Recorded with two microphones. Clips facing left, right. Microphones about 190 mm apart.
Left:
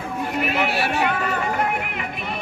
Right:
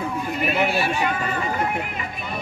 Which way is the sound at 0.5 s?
75° left (ahead or behind).